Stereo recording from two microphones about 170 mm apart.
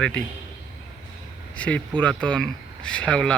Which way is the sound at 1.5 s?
5° left (ahead or behind).